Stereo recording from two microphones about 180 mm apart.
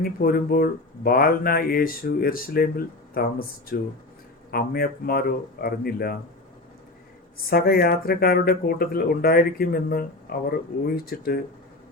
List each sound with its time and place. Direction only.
0.0 s speech: 55° left (ahead or behind)
7.5 s speech: 55° left (ahead or behind)